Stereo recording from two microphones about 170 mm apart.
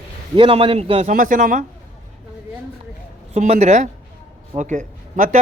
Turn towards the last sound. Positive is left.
turn(degrees=-50)  # may be behind; listen again after turning